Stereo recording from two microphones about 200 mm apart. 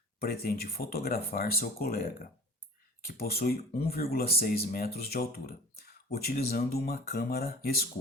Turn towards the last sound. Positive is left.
turn(degrees=50)  # may be behind; listen again after turning